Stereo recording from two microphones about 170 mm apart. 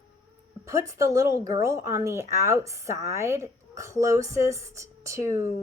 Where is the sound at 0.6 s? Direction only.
15° right (ahead or behind).